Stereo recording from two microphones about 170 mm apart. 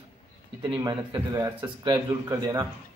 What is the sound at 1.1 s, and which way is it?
Speech, 20° right (ahead or behind).